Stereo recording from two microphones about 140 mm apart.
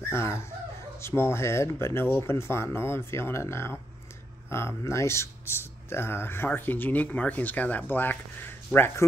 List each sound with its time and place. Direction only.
0.0 s speech: 20° left (ahead or behind)